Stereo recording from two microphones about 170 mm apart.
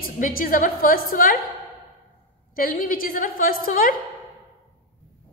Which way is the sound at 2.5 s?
55° left (ahead or behind).